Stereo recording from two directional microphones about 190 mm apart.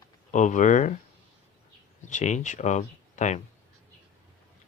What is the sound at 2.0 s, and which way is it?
Speech, 40° left (ahead or behind).